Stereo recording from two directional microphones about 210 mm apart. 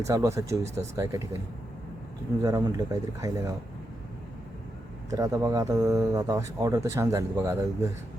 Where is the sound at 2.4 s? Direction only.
15° right (ahead or behind).